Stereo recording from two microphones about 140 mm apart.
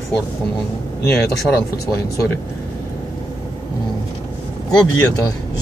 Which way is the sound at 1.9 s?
20° left (ahead or behind).